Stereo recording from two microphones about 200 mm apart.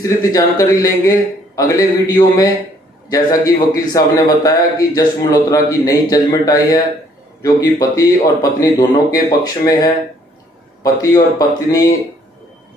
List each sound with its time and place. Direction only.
0.0 s a man's voice: 15° left (ahead or behind)